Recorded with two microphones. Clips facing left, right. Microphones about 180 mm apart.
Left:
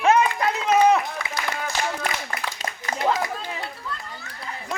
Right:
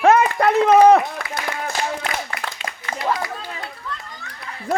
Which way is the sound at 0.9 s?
55° right (ahead or behind).